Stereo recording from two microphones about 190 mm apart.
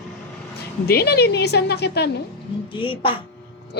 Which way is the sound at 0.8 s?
55° left (ahead or behind).